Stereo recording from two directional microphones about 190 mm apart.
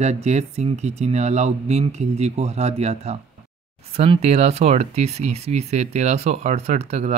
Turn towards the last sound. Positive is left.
turn(degrees=-35)  # may be behind; listen again after turning